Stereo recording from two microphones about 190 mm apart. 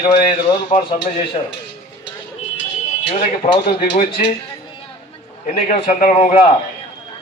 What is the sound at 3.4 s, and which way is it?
Speech, 35° left (ahead or behind).